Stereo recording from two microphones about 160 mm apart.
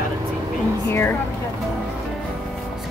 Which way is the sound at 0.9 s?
15° left (ahead or behind).